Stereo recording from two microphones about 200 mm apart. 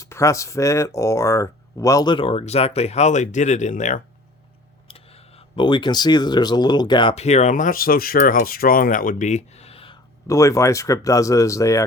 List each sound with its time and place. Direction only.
0.0 s speech: 15° left (ahead or behind)